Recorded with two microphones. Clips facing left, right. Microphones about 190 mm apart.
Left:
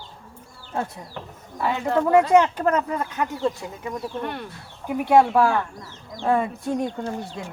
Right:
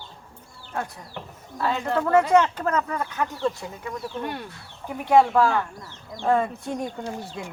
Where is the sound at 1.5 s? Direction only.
15° left (ahead or behind).